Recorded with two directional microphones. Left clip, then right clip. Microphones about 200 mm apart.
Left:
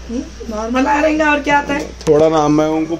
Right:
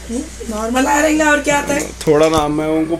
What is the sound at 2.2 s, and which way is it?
Speech, 20° left (ahead or behind).